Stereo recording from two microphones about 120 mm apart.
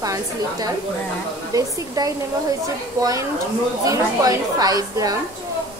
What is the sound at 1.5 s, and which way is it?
Speech, 30° right (ahead or behind).